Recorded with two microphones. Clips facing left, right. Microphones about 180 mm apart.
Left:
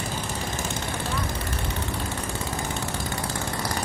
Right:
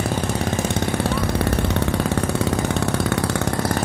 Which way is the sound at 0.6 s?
65° right (ahead or behind).